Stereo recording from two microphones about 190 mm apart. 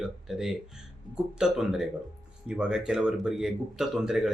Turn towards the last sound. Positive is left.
turn(degrees=0)  # may be behind; listen again after turning